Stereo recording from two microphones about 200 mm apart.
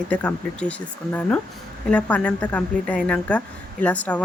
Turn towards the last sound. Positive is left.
turn(degrees=5)  # may be behind; listen again after turning